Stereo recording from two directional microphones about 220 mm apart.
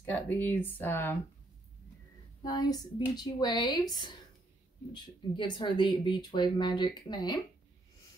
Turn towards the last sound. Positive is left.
turn(degrees=20)  # may be behind; listen again after turning